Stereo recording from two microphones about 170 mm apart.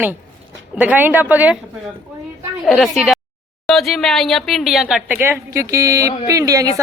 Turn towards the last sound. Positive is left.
turn(degrees=-20)  # may be behind; listen again after turning